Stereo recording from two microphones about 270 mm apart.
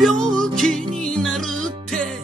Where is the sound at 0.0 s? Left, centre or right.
Centre.